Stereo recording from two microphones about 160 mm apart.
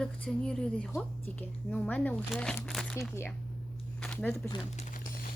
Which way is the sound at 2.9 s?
15° left (ahead or behind).